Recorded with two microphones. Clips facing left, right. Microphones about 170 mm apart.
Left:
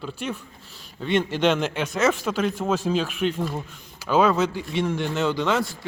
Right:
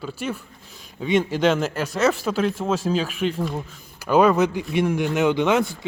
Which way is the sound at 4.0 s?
10° right (ahead or behind).